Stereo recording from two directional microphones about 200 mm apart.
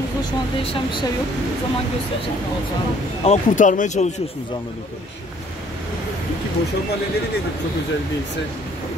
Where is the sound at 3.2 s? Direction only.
35° left (ahead or behind).